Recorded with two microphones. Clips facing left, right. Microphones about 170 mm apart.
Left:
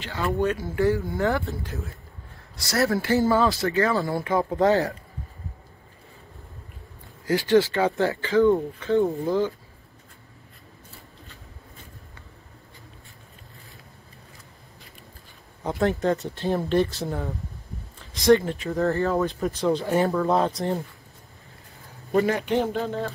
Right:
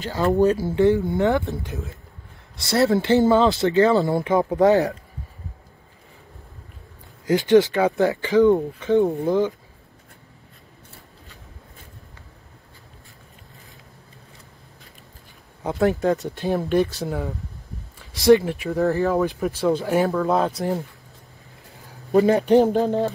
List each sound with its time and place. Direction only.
0.0 s speech: 35° right (ahead or behind); by 4.9 s 15° right (ahead or behind)
7.2 s speech: 20° right (ahead or behind)
15.8 s speech: 10° right (ahead or behind)
22.2 s speech: 35° right (ahead or behind)